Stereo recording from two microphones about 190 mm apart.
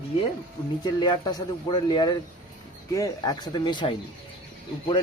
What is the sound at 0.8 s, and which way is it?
Speech, 20° left (ahead or behind).